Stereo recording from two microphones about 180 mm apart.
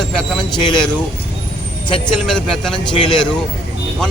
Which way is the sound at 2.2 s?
5° left (ahead or behind).